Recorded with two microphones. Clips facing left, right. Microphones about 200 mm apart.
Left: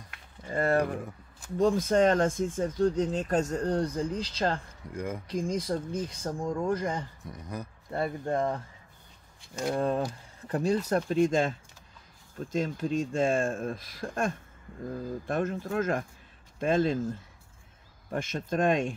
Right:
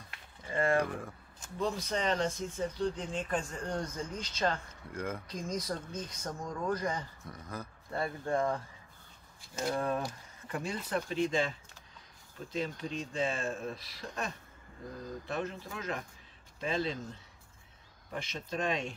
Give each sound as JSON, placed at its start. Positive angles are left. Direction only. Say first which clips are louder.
{"t": 0.5, "sound": "speech", "louder": "left 3 dB", "side_deg": 40}
{"t": 1.6, "sound": "speech", "louder": "left 10 dB", "side_deg": 50}
{"t": 4.9, "sound": "speech", "louder": "left 3 dB", "side_deg": 10}
{"t": 5.3, "sound": "speech", "louder": "left 7 dB", "side_deg": 30}
{"t": 7.2, "sound": "speech", "louder": "left 4 dB", "side_deg": 15}
{"t": 9.8, "sound": "speech", "louder": "left 5 dB", "side_deg": 30}